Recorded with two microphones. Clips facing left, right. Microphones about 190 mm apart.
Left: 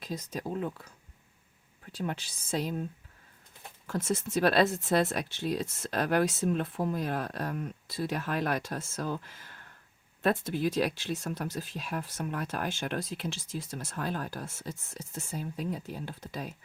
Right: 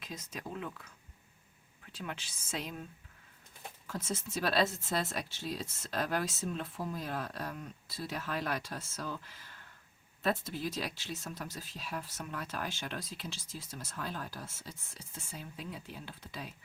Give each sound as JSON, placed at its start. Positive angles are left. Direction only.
{"t": 0.0, "sound": "speech", "side_deg": 35}
{"t": 1.9, "sound": "speech", "side_deg": 35}
{"t": 3.8, "sound": "speech", "side_deg": 60}